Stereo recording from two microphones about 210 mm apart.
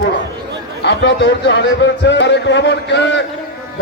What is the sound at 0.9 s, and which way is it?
A man's voice, 55° left (ahead or behind).